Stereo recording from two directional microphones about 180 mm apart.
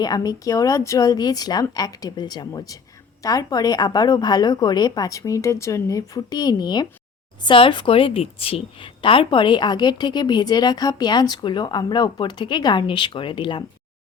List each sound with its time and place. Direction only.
0.0 s a woman's voice: 20° left (ahead or behind)